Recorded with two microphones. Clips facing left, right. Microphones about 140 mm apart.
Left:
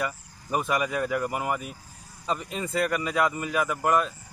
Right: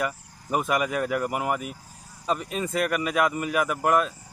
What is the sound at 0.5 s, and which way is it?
A man's voice, 20° right (ahead or behind).